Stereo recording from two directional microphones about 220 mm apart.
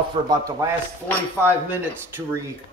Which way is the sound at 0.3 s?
15° right (ahead or behind).